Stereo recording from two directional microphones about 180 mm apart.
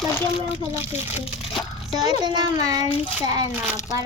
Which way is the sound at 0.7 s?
10° right (ahead or behind).